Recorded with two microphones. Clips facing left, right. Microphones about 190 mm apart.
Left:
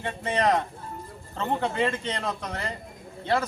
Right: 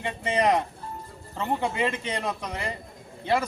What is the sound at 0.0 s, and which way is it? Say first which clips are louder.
A man's voice: right 1 dB; 15° right (ahead or behind).